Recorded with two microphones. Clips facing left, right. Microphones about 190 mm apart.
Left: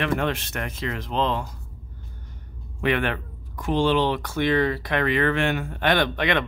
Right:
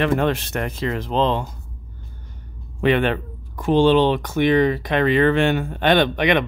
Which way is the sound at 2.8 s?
25° right (ahead or behind).